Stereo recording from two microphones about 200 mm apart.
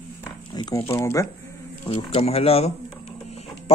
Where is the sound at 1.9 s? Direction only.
30° left (ahead or behind).